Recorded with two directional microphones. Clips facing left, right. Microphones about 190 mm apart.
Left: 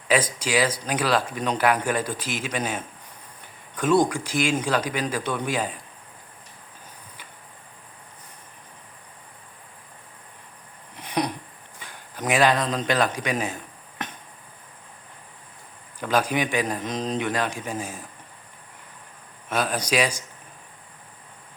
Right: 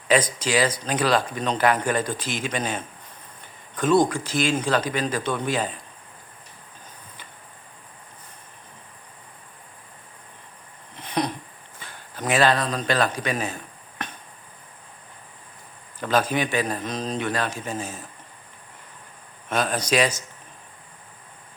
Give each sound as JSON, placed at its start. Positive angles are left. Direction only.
{"t": 0.1, "sound": "speech", "side_deg": 10}
{"t": 10.9, "sound": "a sound", "side_deg": 10}
{"t": 11.8, "sound": "speech", "side_deg": 15}
{"t": 14.0, "sound": "a sound", "side_deg": 20}
{"t": 16.0, "sound": "speech", "side_deg": 10}
{"t": 19.5, "sound": "speech", "side_deg": 10}